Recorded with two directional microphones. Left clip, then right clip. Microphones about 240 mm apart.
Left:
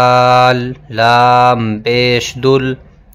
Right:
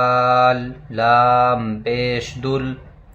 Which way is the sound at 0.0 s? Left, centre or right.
Left.